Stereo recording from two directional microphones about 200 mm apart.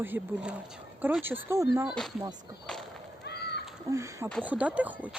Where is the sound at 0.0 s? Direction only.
10° right (ahead or behind).